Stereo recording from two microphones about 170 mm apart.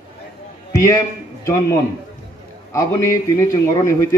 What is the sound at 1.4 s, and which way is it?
A man's voice, 20° left (ahead or behind).